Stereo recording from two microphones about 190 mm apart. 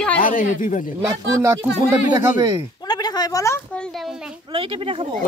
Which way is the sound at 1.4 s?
15° right (ahead or behind).